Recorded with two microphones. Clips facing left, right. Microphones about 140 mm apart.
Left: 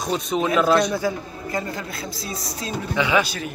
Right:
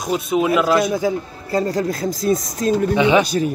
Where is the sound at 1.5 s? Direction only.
35° right (ahead or behind).